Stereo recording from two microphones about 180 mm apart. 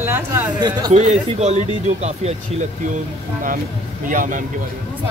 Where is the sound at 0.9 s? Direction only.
40° right (ahead or behind).